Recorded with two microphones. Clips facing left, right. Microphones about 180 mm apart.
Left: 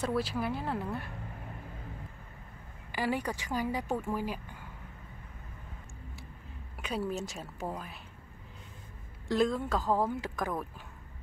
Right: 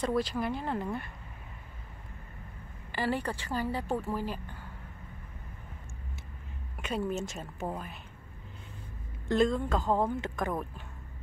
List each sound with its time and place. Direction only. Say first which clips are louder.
0.0 s speech: right 2 dB; 5° left (ahead or behind)
2.9 s speech: right 1 dB; 10° left (ahead or behind)
6.8 s speech: right 2 dB; centre (ahead or behind)
9.3 s speech: right 2 dB; centre (ahead or behind)